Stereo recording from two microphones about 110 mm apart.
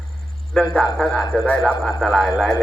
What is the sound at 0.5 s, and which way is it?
A man's voice, 5° left (ahead or behind).